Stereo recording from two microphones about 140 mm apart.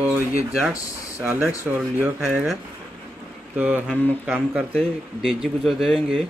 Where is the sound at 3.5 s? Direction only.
10° right (ahead or behind).